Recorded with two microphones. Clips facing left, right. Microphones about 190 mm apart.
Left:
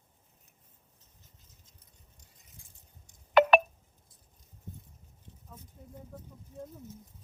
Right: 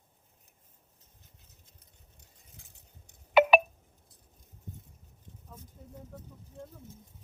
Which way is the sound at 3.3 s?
5° right (ahead or behind).